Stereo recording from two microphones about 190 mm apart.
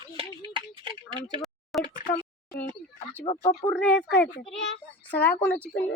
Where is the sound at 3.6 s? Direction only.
5° left (ahead or behind).